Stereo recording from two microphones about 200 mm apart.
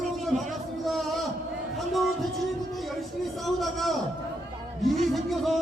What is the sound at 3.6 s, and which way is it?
A man's voice, centre (ahead or behind).